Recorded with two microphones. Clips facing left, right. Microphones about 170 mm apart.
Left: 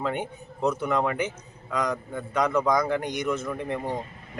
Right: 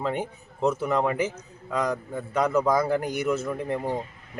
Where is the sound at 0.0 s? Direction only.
Centre (ahead or behind).